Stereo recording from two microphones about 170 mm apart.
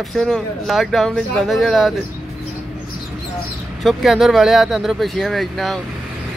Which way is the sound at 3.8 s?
Centre (ahead or behind).